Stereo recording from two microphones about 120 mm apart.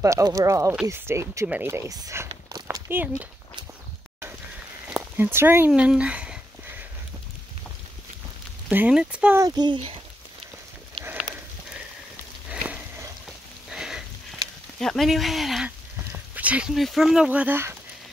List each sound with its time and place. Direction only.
0.0 s speech: 25° right (ahead or behind)
2.9 s speech: 15° right (ahead or behind)
4.8 s a sound: 15° right (ahead or behind)
5.7 s a sound: 10° right (ahead or behind)
8.6 s speech: 10° right (ahead or behind)
9.4 s speech: 35° right (ahead or behind)
12.4 s a sound: 10° right (ahead or behind)
14.8 s speech: 5° left (ahead or behind)
16.1 s speech: 10° right (ahead or behind)